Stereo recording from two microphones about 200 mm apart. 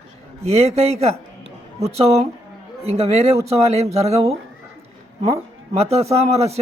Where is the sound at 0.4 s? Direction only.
35° right (ahead or behind).